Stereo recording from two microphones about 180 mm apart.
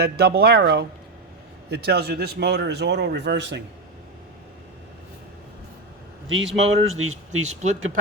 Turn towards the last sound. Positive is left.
turn(degrees=-40)  # may be behind; listen again after turning